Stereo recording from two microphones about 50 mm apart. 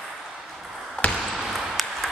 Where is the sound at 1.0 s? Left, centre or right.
Left.